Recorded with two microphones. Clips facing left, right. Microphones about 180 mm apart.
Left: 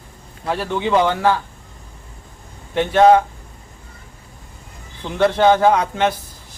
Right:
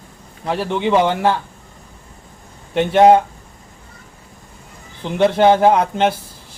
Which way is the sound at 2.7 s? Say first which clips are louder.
Right 1 dB; 20° right (ahead or behind).